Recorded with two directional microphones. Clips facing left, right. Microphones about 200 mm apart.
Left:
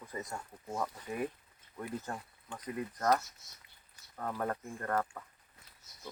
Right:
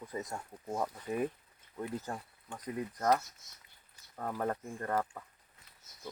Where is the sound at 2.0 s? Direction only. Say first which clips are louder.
Right 1 dB; 10° right (ahead or behind).